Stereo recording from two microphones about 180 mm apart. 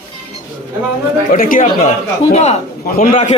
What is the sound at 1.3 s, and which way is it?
Speech, 50° left (ahead or behind).